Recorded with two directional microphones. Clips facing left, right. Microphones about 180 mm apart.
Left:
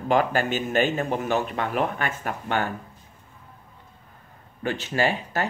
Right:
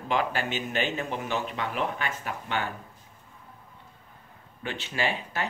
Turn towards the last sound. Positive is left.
turn(degrees=45)  # may be behind; listen again after turning